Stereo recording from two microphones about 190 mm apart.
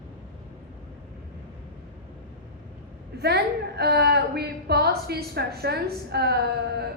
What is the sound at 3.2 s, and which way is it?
A woman's voice, 60° right (ahead or behind).